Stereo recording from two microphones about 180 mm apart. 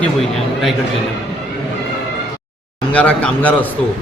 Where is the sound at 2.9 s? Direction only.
5° left (ahead or behind).